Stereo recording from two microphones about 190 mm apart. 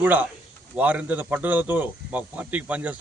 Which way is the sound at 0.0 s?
10° right (ahead or behind).